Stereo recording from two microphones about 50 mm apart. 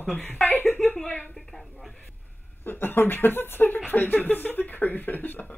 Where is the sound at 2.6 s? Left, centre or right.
Left.